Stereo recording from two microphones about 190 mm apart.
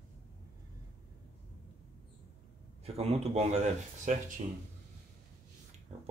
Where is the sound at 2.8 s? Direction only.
30° right (ahead or behind).